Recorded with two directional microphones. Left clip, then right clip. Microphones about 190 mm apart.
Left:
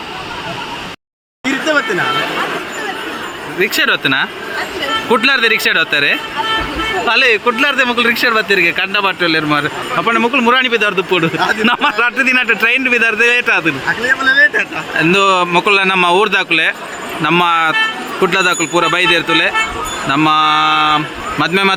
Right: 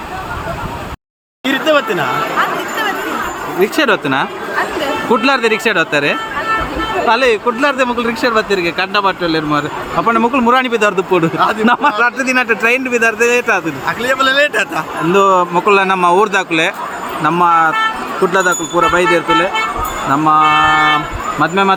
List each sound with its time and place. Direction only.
1.5 s a sound: 30° right (ahead or behind)
3.6 s speech: centre (ahead or behind)
10.0 s a man's voice: 10° right (ahead or behind)
11.6 s speech: centre (ahead or behind)
14.3 s a man's voice: 65° right (ahead or behind)
15.1 s speech: 5° left (ahead or behind)
17.2 s speech: 5° left (ahead or behind)
18.3 s speech: 25° left (ahead or behind)
18.9 s speech: 5° left (ahead or behind)
20.2 s a sound: 5° left (ahead or behind)